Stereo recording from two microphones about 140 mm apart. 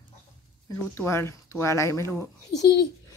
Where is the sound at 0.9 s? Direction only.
15° left (ahead or behind).